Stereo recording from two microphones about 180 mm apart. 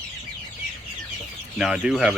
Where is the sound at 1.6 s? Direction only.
Centre (ahead or behind).